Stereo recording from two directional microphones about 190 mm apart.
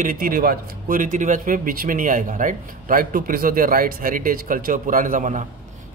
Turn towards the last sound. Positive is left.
turn(degrees=-40)  # may be behind; listen again after turning